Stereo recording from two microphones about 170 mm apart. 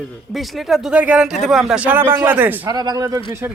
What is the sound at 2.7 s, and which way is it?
Speech, 20° right (ahead or behind).